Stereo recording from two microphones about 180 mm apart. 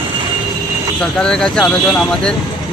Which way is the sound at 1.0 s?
5° left (ahead or behind).